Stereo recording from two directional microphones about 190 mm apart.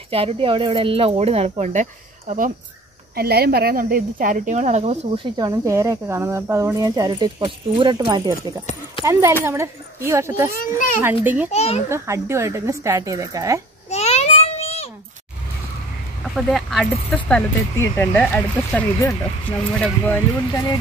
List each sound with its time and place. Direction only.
0.1 s speech: 30° right (ahead or behind)
3.2 s a woman's voice: 55° right (ahead or behind); by 10.8 s 15° right (ahead or behind)
11.5 s a child's voice: 35° left (ahead or behind)
11.9 s a woman's voice: 15° right (ahead or behind)
13.8 s babbling: 35° left (ahead or behind)
16.3 s speech: centre (ahead or behind)